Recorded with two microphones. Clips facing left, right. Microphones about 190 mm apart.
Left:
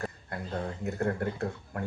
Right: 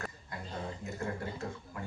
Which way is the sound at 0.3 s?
60° left (ahead or behind).